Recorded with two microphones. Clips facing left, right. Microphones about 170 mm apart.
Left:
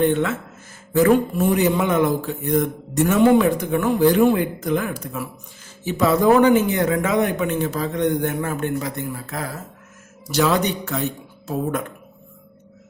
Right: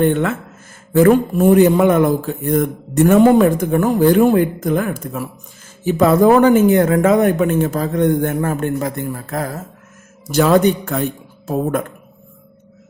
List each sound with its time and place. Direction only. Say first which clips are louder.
0.0 s a man's voice: right 3 dB; 55° right (ahead or behind)